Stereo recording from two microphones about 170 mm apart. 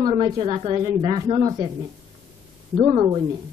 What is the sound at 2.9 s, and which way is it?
Speech, 15° right (ahead or behind).